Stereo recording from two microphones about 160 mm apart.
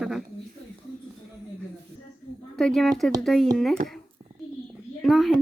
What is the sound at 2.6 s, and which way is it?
A woman's voice, centre (ahead or behind).